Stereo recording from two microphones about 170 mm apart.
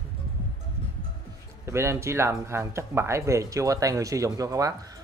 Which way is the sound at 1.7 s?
15° right (ahead or behind).